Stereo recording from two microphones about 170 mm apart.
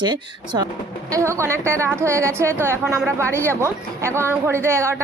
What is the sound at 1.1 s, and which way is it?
A woman's voice, 15° right (ahead or behind).